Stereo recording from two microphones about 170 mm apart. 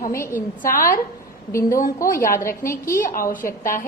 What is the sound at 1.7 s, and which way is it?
Speech, 55° left (ahead or behind).